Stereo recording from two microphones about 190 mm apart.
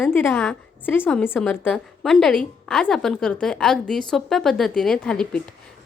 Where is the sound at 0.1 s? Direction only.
10° left (ahead or behind).